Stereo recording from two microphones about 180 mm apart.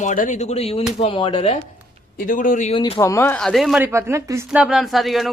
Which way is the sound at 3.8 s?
15° right (ahead or behind).